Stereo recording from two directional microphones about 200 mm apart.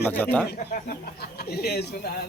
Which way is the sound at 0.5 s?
50° left (ahead or behind).